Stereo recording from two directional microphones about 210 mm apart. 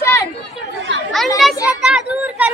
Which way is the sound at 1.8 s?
5° right (ahead or behind).